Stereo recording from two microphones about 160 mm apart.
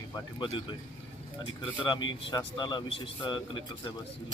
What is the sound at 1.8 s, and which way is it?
Speech, 25° left (ahead or behind).